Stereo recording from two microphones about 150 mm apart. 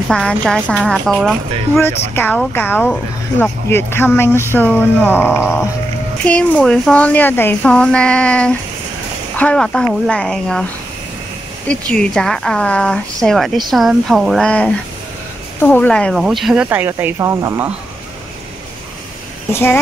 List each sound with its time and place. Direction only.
0.1 s speech: 5° left (ahead or behind)
1.8 s speech: 15° left (ahead or behind); by 16.6 s centre (ahead or behind)
16.6 s speech: 15° right (ahead or behind)
19.5 s speech: 15° left (ahead or behind)